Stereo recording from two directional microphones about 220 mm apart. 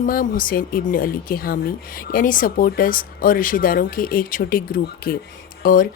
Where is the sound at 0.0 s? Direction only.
40° left (ahead or behind).